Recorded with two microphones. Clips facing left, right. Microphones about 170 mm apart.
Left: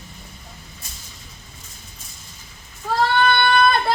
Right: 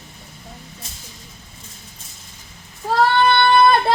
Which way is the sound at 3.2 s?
25° right (ahead or behind).